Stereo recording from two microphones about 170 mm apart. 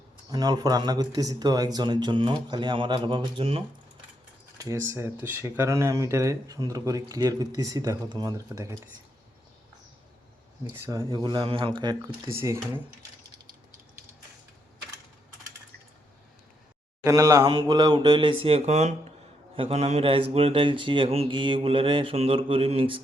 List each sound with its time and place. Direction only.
0.3 s speech: 25° right (ahead or behind)
4.5 s speech: 20° right (ahead or behind)
10.8 s speech: 25° right (ahead or behind)
12.4 s speech: 15° right (ahead or behind)
17.0 s a man's voice: 20° right (ahead or behind)